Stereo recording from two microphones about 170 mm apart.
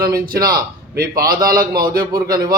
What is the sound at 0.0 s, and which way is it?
Speech, 60° right (ahead or behind).